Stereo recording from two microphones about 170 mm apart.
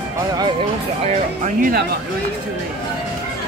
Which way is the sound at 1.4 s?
60° right (ahead or behind).